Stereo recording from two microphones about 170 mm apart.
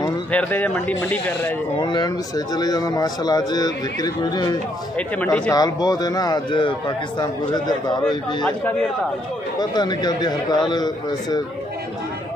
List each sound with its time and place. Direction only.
0.3 s speech: 10° left (ahead or behind)
1.8 s speech: 25° left (ahead or behind)
4.9 s speech: 10° left (ahead or behind)
5.5 s speech: 20° left (ahead or behind)
9.6 s speech: 25° left (ahead or behind)